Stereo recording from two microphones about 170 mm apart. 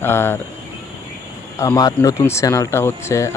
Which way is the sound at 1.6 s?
20° left (ahead or behind).